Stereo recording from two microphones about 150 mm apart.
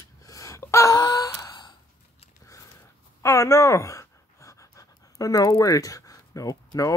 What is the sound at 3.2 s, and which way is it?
Pant, 20° left (ahead or behind).